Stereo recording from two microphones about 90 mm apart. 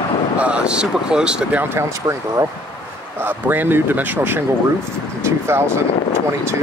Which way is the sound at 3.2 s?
20° right (ahead or behind).